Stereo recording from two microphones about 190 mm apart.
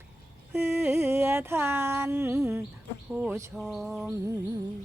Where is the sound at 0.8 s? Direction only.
15° right (ahead or behind).